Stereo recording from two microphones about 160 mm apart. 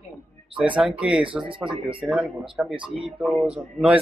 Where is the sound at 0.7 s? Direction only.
5° right (ahead or behind).